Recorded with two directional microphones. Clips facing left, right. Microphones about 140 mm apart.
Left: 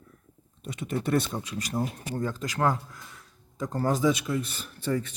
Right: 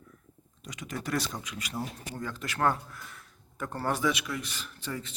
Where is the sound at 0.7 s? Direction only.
30° left (ahead or behind).